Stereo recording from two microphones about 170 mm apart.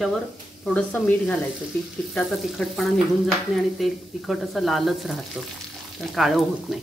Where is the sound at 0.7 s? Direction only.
5° left (ahead or behind).